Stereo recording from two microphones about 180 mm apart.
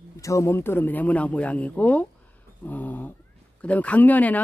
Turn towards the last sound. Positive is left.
turn(degrees=10)  # may be behind; listen again after turning